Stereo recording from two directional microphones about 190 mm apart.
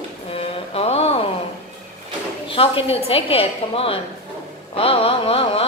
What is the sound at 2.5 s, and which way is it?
A woman's voice, 30° left (ahead or behind).